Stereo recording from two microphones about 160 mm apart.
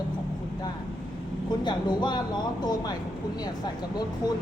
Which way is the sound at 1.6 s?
30° left (ahead or behind).